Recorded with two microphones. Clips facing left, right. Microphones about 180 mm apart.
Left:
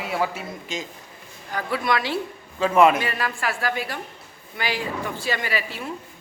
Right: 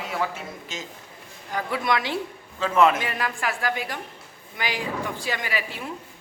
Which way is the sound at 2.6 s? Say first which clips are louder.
Left 3 dB; 15° left (ahead or behind).